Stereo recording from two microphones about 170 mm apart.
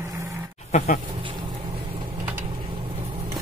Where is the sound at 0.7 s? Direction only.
45° left (ahead or behind).